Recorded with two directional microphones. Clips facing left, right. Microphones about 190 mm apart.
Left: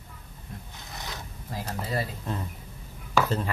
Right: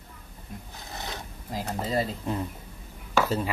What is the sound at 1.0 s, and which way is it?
Filing, 20° right (ahead or behind).